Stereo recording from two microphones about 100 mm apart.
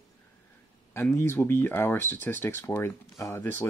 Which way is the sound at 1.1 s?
25° left (ahead or behind).